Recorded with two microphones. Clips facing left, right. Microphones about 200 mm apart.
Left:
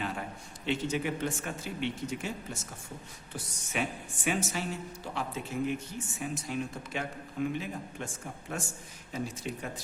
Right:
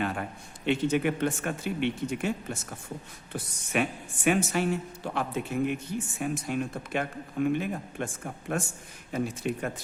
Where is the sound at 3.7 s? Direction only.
60° right (ahead or behind).